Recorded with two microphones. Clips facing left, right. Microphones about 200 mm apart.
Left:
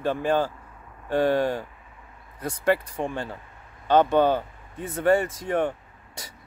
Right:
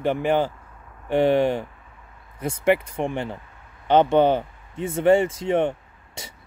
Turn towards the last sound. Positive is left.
turn(degrees=-25)  # may be behind; listen again after turning